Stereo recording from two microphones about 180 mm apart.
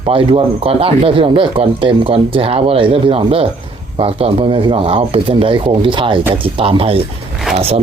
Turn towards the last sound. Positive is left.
turn(degrees=-35)  # may be behind; listen again after turning